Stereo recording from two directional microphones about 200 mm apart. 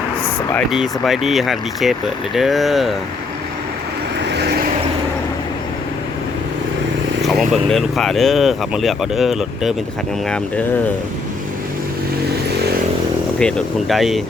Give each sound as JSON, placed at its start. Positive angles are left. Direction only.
{"t": 0.7, "sound": "speech", "side_deg": 0}
{"t": 4.2, "sound": "vehicle", "side_deg": -60}
{"t": 7.2, "sound": "speech", "side_deg": 0}
{"t": 13.4, "sound": "speech", "side_deg": 0}